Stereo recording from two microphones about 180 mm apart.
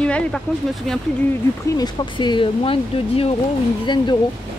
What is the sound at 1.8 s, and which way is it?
A woman's voice, 25° left (ahead or behind).